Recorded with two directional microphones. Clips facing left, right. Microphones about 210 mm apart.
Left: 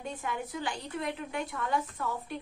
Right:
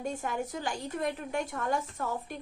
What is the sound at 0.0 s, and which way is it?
A woman's voice, 45° right (ahead or behind).